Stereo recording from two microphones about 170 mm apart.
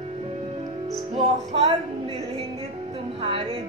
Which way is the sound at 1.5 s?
35° right (ahead or behind).